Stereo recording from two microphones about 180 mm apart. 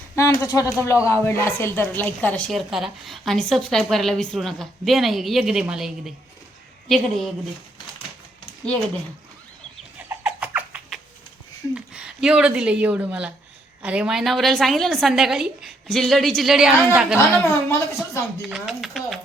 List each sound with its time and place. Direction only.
0.2 s a woman's voice: 20° left (ahead or behind); by 7.3 s centre (ahead or behind)
10.1 s a sound: 10° right (ahead or behind)
11.7 s a woman's voice: 5° right (ahead or behind)
17.2 s a woman's voice: 15° left (ahead or behind)
18.4 s speech: 5° right (ahead or behind)